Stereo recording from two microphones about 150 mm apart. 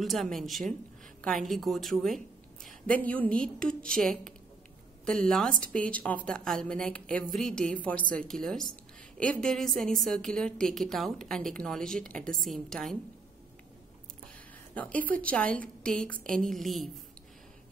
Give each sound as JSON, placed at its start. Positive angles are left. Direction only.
{"t": 0.0, "sound": "a woman's voice", "side_deg": 0}
{"t": 14.7, "sound": "a woman's voice", "side_deg": 10}